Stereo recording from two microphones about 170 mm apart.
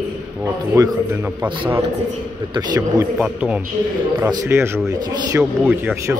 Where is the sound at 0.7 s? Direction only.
10° right (ahead or behind).